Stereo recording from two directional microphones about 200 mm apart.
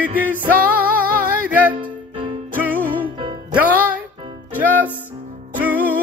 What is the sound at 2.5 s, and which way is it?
Music, 10° right (ahead or behind).